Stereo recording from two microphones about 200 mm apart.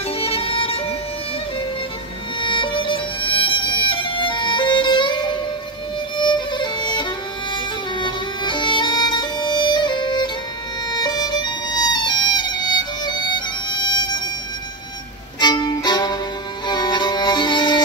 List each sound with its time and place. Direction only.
0.2 s music: 30° left (ahead or behind)
2.4 s music: 25° left (ahead or behind)
10.9 s violin: 20° left (ahead or behind)
15.4 s music: 20° left (ahead or behind)